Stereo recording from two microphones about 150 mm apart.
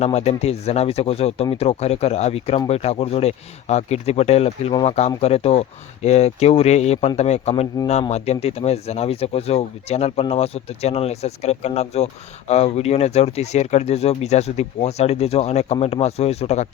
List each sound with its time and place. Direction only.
0.0 s speech: 45° left (ahead or behind)